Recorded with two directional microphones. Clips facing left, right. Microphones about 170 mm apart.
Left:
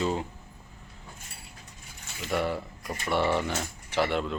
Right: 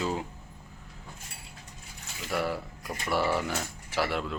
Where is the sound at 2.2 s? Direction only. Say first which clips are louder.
Left 2 dB; centre (ahead or behind).